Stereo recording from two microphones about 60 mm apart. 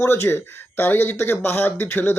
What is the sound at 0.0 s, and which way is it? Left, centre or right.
Speech, left.